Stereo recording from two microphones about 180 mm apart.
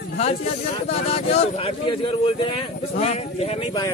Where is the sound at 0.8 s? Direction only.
35° left (ahead or behind).